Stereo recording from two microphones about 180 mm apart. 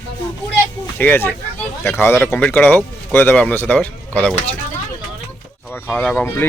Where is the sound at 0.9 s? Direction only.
10° left (ahead or behind).